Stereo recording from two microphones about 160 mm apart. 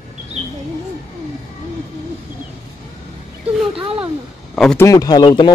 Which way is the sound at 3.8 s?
35° right (ahead or behind).